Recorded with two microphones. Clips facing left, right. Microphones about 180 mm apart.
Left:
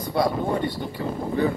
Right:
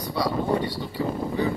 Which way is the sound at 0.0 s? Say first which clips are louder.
Left 3 dB; 50° left (ahead or behind).